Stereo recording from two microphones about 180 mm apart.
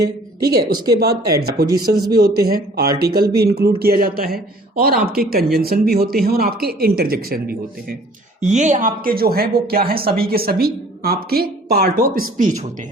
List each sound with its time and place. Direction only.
0.0 s a woman's voice: 60° right (ahead or behind)
0.6 s speech: 20° right (ahead or behind)
0.9 s speech: 60° right (ahead or behind)
8.4 s speech: 40° right (ahead or behind)